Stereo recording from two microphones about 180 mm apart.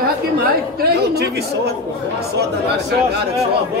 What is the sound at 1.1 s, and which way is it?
Speech, 65° right (ahead or behind).